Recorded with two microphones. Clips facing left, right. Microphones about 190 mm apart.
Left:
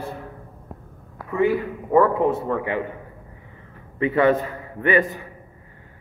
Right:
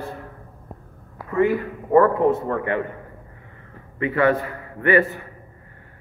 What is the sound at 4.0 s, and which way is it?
A man's voice, 20° left (ahead or behind).